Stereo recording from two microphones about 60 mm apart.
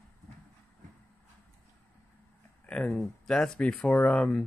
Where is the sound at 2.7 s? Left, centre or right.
Centre.